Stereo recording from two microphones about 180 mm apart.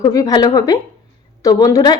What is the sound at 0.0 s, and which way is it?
Speech, 20° left (ahead or behind).